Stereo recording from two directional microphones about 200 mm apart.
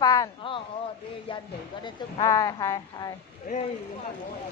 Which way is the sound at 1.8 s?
20° left (ahead or behind).